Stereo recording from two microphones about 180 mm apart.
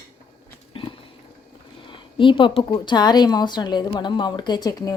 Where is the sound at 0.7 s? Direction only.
30° left (ahead or behind).